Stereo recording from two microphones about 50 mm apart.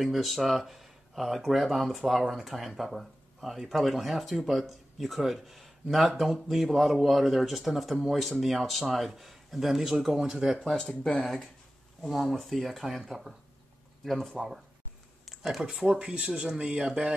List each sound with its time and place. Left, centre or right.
0.0 s speech: centre
10.6 s speech: centre
12.1 s speech: centre
16.0 s speech: centre